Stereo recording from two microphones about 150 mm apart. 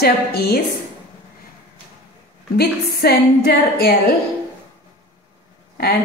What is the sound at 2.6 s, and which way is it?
A woman's voice, 90° left.